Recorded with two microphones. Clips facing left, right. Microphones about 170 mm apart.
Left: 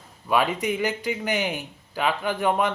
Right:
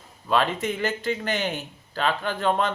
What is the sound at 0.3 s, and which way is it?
A man's voice, 15° left (ahead or behind).